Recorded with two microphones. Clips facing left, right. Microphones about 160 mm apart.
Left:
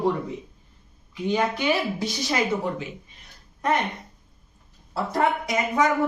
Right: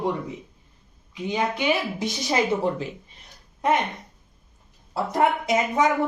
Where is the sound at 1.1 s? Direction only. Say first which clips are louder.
Left 2 dB; 20° right (ahead or behind).